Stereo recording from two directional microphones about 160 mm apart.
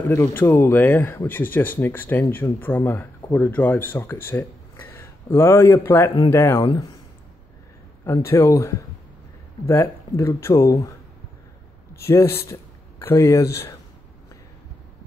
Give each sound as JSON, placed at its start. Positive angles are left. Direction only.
{"t": 0.0, "sound": "speech", "side_deg": 15}
{"t": 8.3, "sound": "speech", "side_deg": 20}
{"t": 12.1, "sound": "speech", "side_deg": 15}